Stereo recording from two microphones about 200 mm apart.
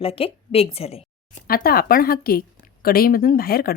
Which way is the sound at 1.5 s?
50° left (ahead or behind).